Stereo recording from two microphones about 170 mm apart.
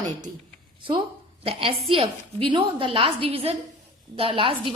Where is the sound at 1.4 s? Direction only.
35° right (ahead or behind).